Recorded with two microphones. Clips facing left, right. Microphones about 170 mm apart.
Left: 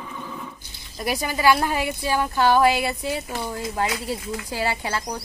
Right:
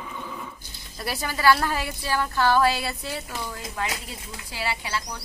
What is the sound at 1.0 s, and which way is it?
A woman's voice, 15° left (ahead or behind).